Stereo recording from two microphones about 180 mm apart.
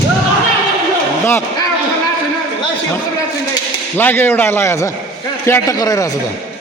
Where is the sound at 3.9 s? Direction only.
10° left (ahead or behind).